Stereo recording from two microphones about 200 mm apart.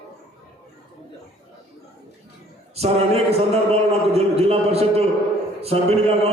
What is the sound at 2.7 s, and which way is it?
A man's voice, 30° right (ahead or behind).